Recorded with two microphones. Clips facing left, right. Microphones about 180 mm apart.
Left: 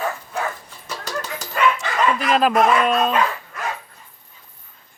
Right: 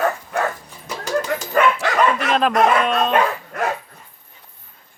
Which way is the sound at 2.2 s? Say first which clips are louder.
Even; 5° left (ahead or behind).